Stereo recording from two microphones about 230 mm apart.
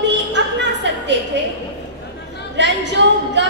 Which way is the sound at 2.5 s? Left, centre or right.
Right.